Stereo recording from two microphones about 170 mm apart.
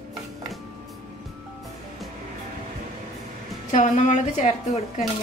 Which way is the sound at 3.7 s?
45° left (ahead or behind).